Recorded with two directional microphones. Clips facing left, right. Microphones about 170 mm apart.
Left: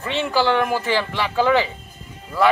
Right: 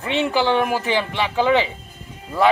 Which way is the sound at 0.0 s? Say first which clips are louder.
Right 1 dB; 15° right (ahead or behind).